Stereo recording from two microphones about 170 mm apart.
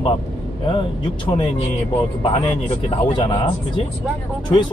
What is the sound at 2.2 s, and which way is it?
A man's voice, 35° left (ahead or behind).